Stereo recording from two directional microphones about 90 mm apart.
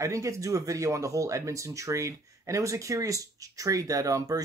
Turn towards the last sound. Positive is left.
turn(degrees=-40)  # may be behind; listen again after turning